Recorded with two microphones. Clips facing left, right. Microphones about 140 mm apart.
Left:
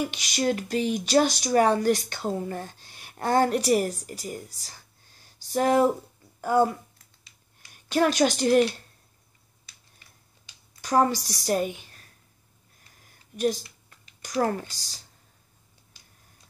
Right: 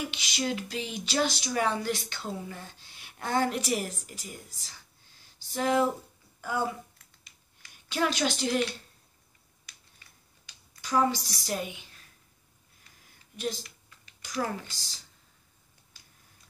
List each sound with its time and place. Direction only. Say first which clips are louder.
0.0 s a woman's voice: left 6 dB; 45° left (ahead or behind)
10.8 s a woman's voice: left 4 dB; 50° left (ahead or behind)
13.4 s speech: left 8 dB; 45° left (ahead or behind)